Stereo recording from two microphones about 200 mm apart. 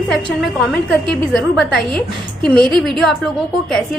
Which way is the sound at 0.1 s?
Centre (ahead or behind).